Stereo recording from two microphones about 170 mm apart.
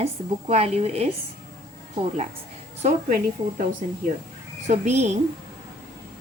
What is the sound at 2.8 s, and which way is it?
Speech, 55° right (ahead or behind).